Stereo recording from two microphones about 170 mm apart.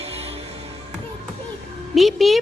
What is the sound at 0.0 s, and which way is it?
Music, 35° right (ahead or behind).